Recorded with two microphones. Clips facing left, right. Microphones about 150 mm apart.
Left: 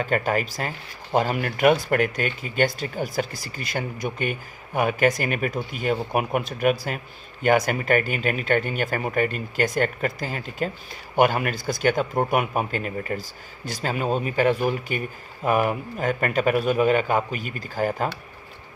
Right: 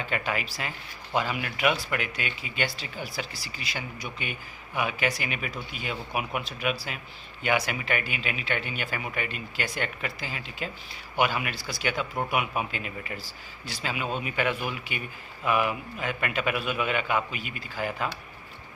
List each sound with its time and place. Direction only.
0.0 s a man's voice: 45° left (ahead or behind)